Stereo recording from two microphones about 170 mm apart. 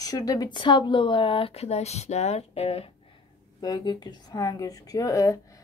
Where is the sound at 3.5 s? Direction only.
25° left (ahead or behind).